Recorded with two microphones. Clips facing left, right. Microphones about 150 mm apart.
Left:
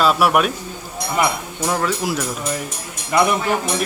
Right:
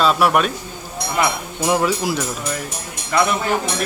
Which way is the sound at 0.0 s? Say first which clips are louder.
Even; 5° left (ahead or behind).